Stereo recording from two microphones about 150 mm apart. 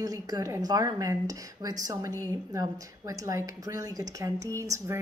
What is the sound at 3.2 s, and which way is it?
A woman's voice, 20° right (ahead or behind).